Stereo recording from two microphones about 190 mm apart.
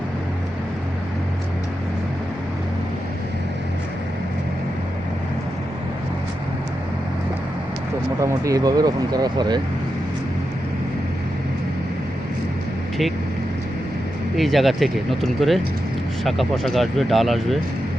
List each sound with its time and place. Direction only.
8.2 s speech: 20° right (ahead or behind)
14.3 s speech: centre (ahead or behind)